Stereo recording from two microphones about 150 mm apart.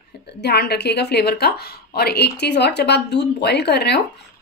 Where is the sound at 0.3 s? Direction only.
90° left.